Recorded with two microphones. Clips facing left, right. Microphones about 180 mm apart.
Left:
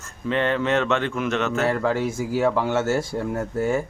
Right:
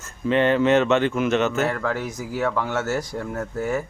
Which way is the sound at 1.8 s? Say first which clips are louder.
Left 4 dB; 30° left (ahead or behind).